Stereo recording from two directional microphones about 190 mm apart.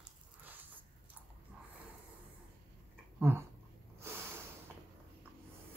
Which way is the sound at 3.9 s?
15° right (ahead or behind).